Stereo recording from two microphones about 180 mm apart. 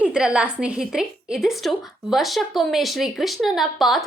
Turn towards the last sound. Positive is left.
turn(degrees=0)  # may be behind; listen again after turning